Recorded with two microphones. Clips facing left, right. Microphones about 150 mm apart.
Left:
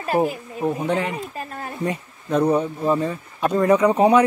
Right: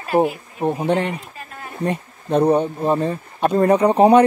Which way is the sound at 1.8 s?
30° right (ahead or behind).